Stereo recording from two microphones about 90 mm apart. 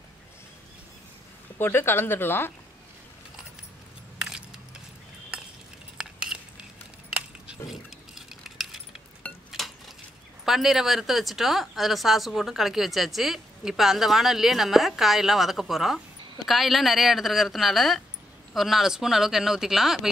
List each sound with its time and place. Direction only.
1.6 s speech: 25° left (ahead or behind)
5.9 s cutlery: 5° right (ahead or behind)
9.2 s a sound: 15° left (ahead or behind)
10.4 s speech: 5° right (ahead or behind)